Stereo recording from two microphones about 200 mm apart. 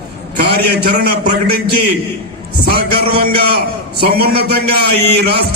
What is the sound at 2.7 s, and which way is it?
A man's voice, 50° right (ahead or behind).